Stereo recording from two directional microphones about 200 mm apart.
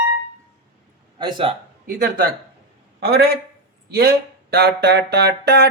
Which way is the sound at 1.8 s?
45° right (ahead or behind).